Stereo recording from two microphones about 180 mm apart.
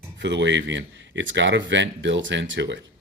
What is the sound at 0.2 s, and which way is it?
Speech, 80° right.